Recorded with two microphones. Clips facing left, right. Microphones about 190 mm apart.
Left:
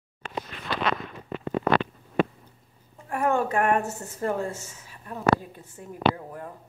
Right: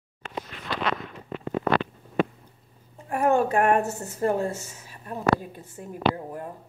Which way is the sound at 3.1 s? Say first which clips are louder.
Right 3 dB; 25° right (ahead or behind).